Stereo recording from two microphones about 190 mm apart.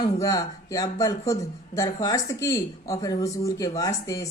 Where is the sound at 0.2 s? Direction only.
20° left (ahead or behind).